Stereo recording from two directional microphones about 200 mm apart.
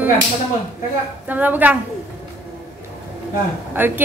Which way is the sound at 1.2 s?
10° right (ahead or behind).